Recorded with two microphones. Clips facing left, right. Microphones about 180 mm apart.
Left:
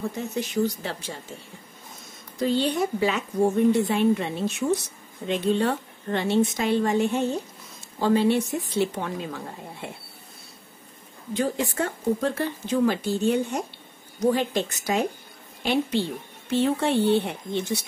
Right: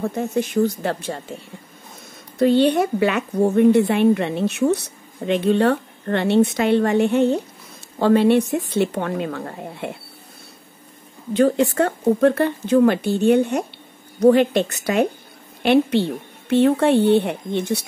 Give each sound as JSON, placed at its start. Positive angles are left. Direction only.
{"t": 0.0, "sound": "speech", "side_deg": -50}
{"t": 2.3, "sound": "a woman's voice", "side_deg": -65}
{"t": 11.3, "sound": "a woman's voice", "side_deg": -65}